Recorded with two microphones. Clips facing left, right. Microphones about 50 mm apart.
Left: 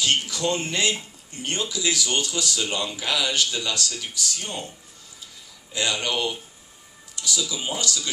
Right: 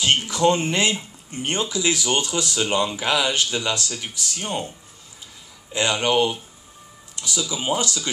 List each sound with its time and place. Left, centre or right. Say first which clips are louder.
0.0 s speech: right 5 dB; right
5.7 s speech: right 5 dB; right